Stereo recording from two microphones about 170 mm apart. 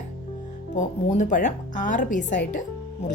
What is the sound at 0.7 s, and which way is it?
Speech, 45° left (ahead or behind).